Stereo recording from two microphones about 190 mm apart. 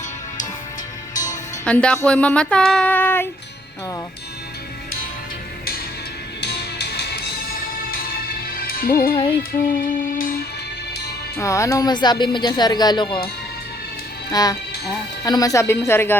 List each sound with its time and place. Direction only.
1.1 s music: 40° left (ahead or behind)
1.6 s music: 5° left (ahead or behind)
6.4 s music: 60° left (ahead or behind)
11.3 s speech: 15° left (ahead or behind)
14.3 s speech: 20° left (ahead or behind)